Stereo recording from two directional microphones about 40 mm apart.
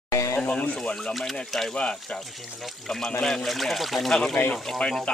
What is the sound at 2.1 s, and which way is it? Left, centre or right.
Speech, centre.